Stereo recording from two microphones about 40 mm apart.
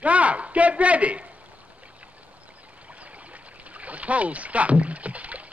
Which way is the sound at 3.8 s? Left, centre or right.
Right.